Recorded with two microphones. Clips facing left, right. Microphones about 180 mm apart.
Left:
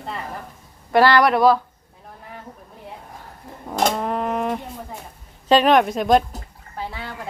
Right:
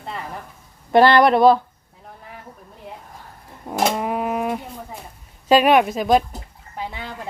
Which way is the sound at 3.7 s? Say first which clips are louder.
Even; 5° right (ahead or behind).